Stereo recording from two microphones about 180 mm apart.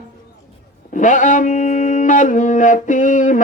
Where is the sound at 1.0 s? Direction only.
45° left (ahead or behind).